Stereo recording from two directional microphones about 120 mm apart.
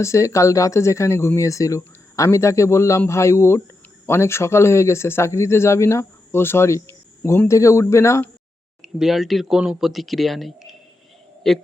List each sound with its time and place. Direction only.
0.0 s speech: 25° left (ahead or behind)
8.8 s speech: 5° right (ahead or behind)